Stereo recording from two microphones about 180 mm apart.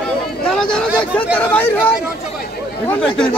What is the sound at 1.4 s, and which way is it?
Speech, 10° left (ahead or behind).